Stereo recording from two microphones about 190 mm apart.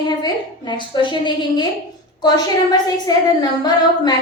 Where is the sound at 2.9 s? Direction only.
20° left (ahead or behind).